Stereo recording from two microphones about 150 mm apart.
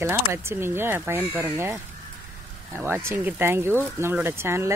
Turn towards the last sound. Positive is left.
turn(degrees=-15)  # may be behind; listen again after turning